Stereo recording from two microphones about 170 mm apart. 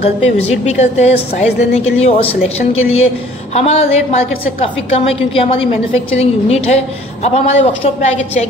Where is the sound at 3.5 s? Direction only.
40° left (ahead or behind).